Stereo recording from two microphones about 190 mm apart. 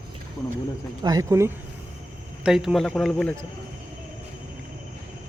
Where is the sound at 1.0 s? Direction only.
20° right (ahead or behind).